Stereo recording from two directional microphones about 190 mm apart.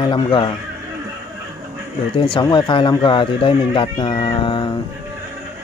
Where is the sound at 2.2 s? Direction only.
25° left (ahead or behind).